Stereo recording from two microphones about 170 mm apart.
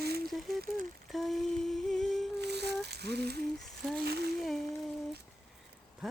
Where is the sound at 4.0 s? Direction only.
70° right (ahead or behind).